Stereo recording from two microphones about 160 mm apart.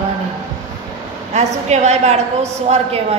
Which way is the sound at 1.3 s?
45° right (ahead or behind).